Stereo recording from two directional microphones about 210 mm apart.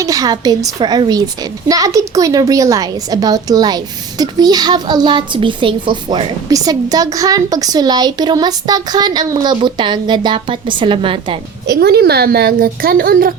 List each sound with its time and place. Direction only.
0.0 s a woman's voice: 15° right (ahead or behind)
11.6 s a woman's voice: 50° right (ahead or behind)